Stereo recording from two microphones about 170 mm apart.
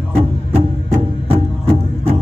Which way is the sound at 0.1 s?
35° right (ahead or behind).